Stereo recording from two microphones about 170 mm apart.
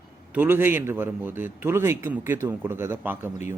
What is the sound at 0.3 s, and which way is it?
A man's voice, 10° right (ahead or behind).